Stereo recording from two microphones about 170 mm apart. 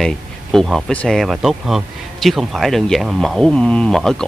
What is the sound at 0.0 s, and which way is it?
Speech, centre (ahead or behind).